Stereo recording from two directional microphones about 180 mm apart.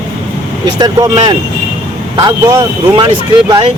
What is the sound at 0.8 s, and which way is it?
Speech, 20° right (ahead or behind).